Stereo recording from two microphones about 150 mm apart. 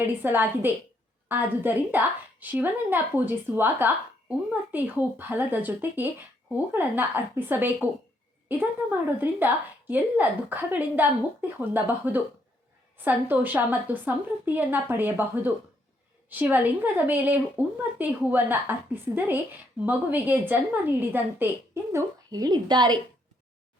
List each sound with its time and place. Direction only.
0.2 s speech: 15° right (ahead or behind)
21.9 s a woman's voice: 25° right (ahead or behind)